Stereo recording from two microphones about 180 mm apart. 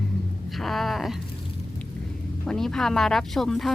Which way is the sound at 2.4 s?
5° left (ahead or behind).